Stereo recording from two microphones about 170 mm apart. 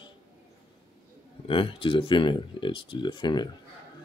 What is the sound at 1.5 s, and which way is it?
Speech, 30° left (ahead or behind).